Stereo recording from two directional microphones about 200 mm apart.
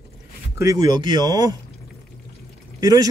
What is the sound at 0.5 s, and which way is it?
Speech, 15° right (ahead or behind).